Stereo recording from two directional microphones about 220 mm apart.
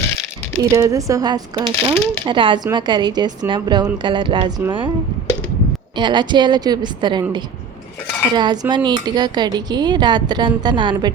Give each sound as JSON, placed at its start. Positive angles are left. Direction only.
{"t": 0.6, "sound": "speech", "side_deg": -15}
{"t": 6.0, "sound": "speech", "side_deg": -20}